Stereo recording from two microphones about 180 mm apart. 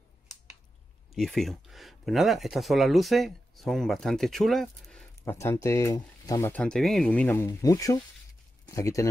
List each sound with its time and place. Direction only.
1.1 s speech: centre (ahead or behind)
5.2 s speech: 15° left (ahead or behind)